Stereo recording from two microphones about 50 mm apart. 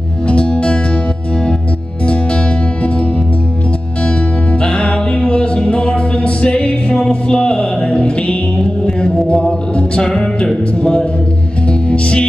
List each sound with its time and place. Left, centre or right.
0.3 s music: left
4.0 s music: left